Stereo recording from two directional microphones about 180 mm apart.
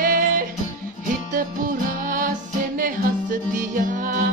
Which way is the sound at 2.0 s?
50° right (ahead or behind).